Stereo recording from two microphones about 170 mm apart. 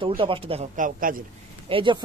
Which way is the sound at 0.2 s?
30° right (ahead or behind).